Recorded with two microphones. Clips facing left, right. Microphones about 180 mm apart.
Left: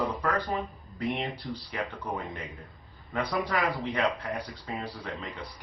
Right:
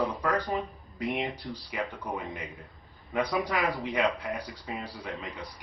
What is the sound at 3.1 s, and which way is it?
Speech, 15° right (ahead or behind).